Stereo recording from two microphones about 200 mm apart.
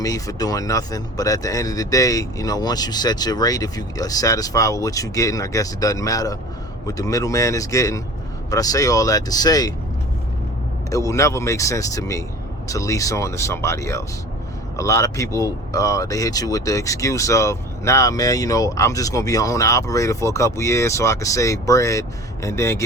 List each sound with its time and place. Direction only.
0.0 s speech: 15° left (ahead or behind)
10.8 s speech: 15° left (ahead or behind)